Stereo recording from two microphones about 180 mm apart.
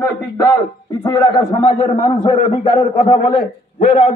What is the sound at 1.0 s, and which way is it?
Speech, 20° left (ahead or behind).